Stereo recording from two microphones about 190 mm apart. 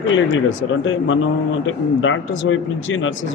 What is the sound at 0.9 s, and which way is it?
A man's voice, 90° left.